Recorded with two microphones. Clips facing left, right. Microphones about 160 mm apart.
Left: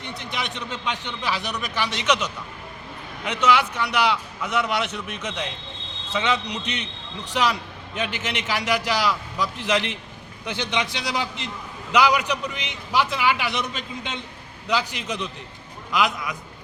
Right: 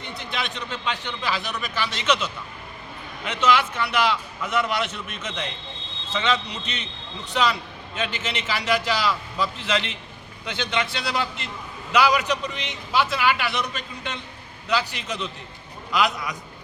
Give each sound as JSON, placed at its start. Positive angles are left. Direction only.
{"t": 0.0, "sound": "a man's voice", "side_deg": 15}
{"t": 7.9, "sound": "a man's voice", "side_deg": 10}
{"t": 14.7, "sound": "a man's voice", "side_deg": 15}